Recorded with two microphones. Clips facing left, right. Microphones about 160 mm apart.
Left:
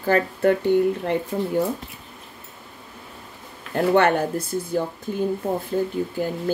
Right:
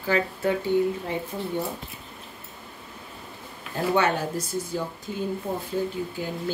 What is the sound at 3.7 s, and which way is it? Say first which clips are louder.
Speech: left 5 dB; 60° left (ahead or behind).